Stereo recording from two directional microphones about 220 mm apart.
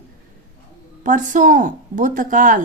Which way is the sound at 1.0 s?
35° right (ahead or behind).